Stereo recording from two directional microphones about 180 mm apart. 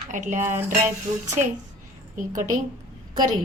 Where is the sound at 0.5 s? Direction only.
15° right (ahead or behind).